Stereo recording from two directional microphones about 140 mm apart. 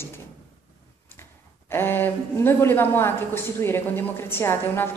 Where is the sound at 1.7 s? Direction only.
15° left (ahead or behind).